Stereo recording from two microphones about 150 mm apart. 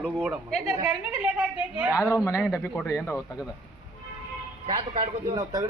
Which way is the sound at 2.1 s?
20° left (ahead or behind).